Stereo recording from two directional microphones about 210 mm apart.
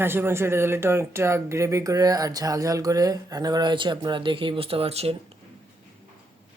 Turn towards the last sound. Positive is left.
turn(degrees=-30)  # may be behind; listen again after turning